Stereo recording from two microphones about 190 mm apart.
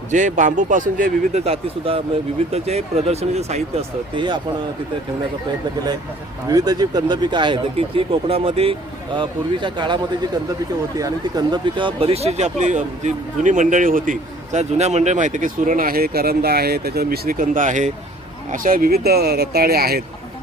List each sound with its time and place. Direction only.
0.1 s speech: 40° right (ahead or behind)
1.5 s speech: 30° right (ahead or behind)
6.5 s speech: 20° right (ahead or behind); by 20.0 s 55° right (ahead or behind)